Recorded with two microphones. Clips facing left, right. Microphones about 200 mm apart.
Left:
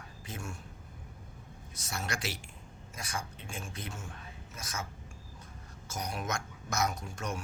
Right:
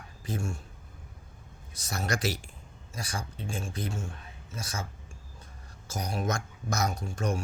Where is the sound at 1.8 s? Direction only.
40° right (ahead or behind).